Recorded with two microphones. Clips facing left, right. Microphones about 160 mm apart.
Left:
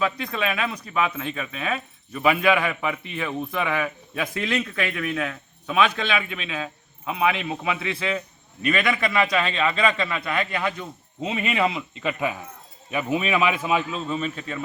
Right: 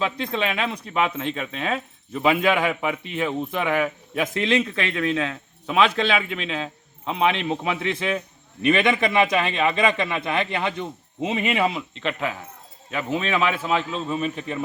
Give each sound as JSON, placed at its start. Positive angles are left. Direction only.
{"t": 0.0, "sound": "speech", "side_deg": -25}
{"t": 11.5, "sound": "a man's voice", "side_deg": -5}
{"t": 12.0, "sound": "a man's voice", "side_deg": 15}
{"t": 14.0, "sound": "a man's voice", "side_deg": -10}